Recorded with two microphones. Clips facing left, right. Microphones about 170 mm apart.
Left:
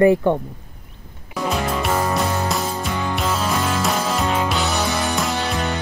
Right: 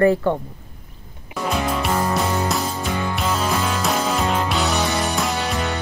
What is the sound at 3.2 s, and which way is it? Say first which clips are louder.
Music: even; centre (ahead or behind).